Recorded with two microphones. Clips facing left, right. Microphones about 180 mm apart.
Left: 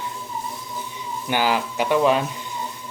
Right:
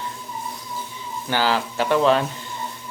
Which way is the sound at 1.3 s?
15° left (ahead or behind).